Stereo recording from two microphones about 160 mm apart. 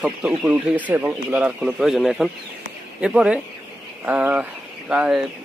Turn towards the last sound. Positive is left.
turn(degrees=-5)  # may be behind; listen again after turning